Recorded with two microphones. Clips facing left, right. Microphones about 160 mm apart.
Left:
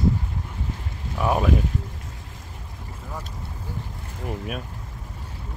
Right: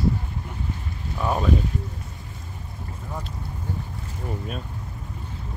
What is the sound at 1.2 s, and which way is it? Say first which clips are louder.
Speech: left 2 dB; 10° left (ahead or behind).